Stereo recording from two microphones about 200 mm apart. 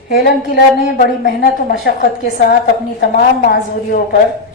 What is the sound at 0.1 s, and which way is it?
A woman's voice, 50° left (ahead or behind).